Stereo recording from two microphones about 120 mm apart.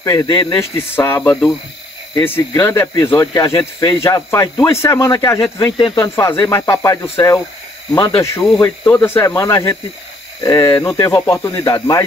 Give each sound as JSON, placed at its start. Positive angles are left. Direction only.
{"t": 0.0, "sound": "speech", "side_deg": 25}
{"t": 0.6, "sound": "speech", "side_deg": 20}
{"t": 5.8, "sound": "speech", "side_deg": 40}
{"t": 6.0, "sound": "speech", "side_deg": 25}